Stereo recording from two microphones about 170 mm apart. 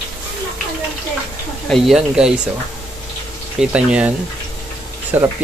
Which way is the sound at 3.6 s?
5° right (ahead or behind).